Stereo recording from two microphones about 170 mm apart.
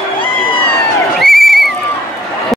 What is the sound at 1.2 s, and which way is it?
Neigh, centre (ahead or behind).